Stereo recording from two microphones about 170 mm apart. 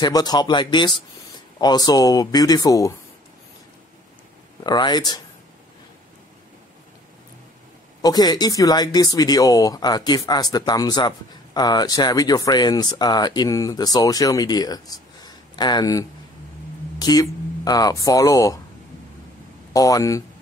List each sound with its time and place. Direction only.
0.0 s speech: 25° left (ahead or behind)
4.6 s speech: 25° left (ahead or behind)
8.0 s speech: 25° left (ahead or behind)
19.7 s speech: 20° left (ahead or behind)